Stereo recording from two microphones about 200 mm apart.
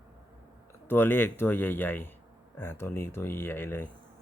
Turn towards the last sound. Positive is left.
turn(degrees=10)  # may be behind; listen again after turning